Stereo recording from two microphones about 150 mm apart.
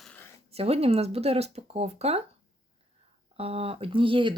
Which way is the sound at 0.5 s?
40° right (ahead or behind).